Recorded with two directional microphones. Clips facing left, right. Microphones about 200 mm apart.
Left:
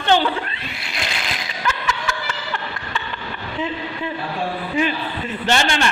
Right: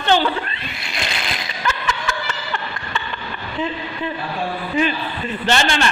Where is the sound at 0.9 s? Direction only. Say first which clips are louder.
Right 1 dB; centre (ahead or behind).